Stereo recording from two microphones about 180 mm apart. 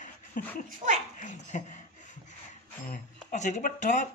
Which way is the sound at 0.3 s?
50° left (ahead or behind).